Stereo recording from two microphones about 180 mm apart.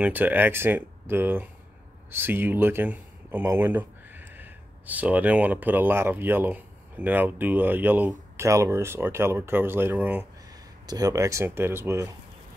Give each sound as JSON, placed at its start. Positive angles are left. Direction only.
{"t": 0.0, "sound": "speech", "side_deg": -10}
{"t": 10.9, "sound": "speech", "side_deg": -20}